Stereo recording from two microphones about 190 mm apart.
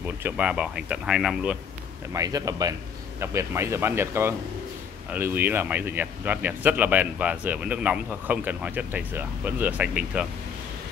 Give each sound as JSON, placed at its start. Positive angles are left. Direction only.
{"t": 0.2, "sound": "speech", "side_deg": -5}
{"t": 2.1, "sound": "speech", "side_deg": -20}